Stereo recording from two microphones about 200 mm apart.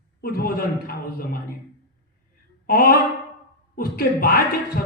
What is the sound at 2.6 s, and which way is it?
Speech, 50° left (ahead or behind).